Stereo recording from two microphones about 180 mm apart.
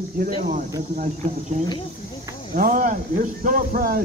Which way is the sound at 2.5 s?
50° right (ahead or behind).